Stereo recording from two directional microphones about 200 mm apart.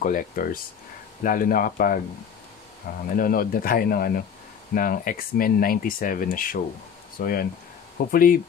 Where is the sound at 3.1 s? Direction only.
45° left (ahead or behind).